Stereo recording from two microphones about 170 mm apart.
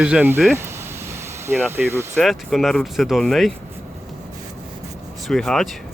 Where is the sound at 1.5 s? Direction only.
10° right (ahead or behind).